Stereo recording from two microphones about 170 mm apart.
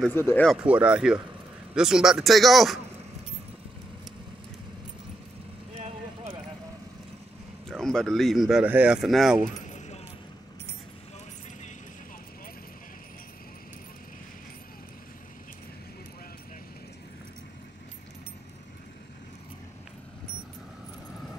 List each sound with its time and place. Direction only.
0.1 s speech: 15° left (ahead or behind)
0.5 s speech: 5° right (ahead or behind)
5.8 s vehicle: 40° right (ahead or behind)
7.8 s speech: 5° left (ahead or behind)
9.6 s keys jangling: 45° left (ahead or behind)